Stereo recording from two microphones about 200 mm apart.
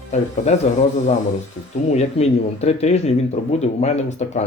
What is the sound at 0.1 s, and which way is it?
Speech, 35° left (ahead or behind).